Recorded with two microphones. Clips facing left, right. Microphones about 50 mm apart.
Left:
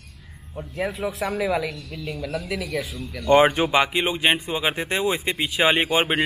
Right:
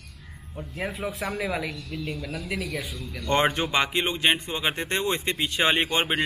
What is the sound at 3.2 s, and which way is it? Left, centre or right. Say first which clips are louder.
A man's voice: left 7 dB; centre.